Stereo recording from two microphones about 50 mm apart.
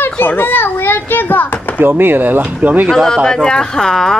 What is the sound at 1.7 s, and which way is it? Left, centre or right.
Speech, right.